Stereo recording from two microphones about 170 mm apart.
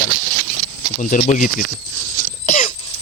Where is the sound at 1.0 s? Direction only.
45° left (ahead or behind).